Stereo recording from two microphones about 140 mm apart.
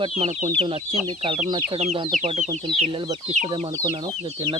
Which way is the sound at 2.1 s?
55° right (ahead or behind).